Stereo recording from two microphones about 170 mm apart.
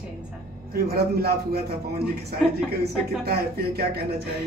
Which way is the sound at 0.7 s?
65° right (ahead or behind).